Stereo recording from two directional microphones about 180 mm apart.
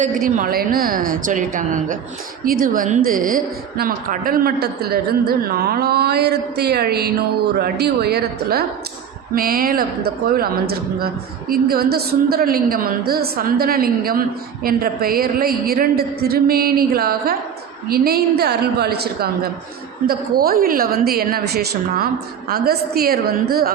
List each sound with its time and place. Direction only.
0.0 s a woman's voice: 50° right (ahead or behind)